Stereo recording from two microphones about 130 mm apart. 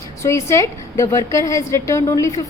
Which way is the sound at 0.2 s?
20° left (ahead or behind).